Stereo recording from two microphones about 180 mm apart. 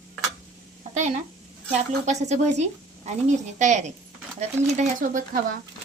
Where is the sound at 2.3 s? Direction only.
40° right (ahead or behind).